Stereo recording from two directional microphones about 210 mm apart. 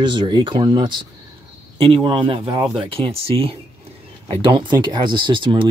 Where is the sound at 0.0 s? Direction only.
20° right (ahead or behind).